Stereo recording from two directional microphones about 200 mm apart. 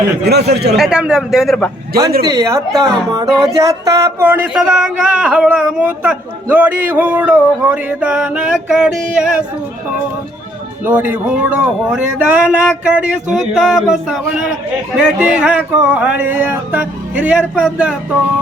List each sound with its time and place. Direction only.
0.3 s speech: 55° right (ahead or behind)
0.8 s speech: 5° right (ahead or behind)
2.2 s speech: 15° right (ahead or behind)
3.1 s music: 20° right (ahead or behind)
3.5 s speech: 15° right (ahead or behind)
10.8 s speech: 10° right (ahead or behind)